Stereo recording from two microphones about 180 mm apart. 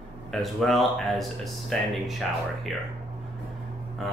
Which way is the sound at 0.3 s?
Centre (ahead or behind).